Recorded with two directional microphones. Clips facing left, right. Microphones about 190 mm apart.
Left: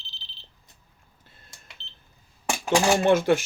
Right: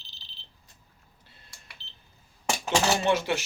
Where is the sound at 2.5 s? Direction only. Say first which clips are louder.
Left 4 dB; 10° left (ahead or behind).